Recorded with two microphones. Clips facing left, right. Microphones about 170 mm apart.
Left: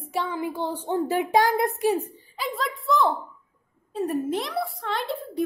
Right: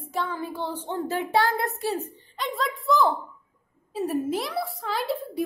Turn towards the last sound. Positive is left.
turn(degrees=0)  # may be behind; listen again after turning